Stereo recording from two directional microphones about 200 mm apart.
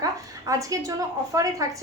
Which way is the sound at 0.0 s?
15° right (ahead or behind).